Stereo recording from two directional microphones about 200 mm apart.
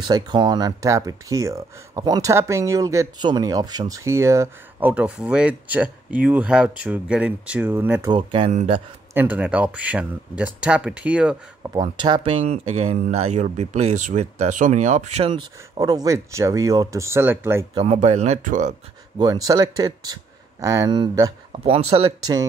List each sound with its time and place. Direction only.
0.0 s speech: 20° right (ahead or behind)
8.1 s speech: 25° right (ahead or behind)
9.1 s speech: 10° right (ahead or behind)
11.7 s speech: 25° right (ahead or behind)
17.7 s speech: 30° right (ahead or behind)
19.1 s speech: 20° right (ahead or behind)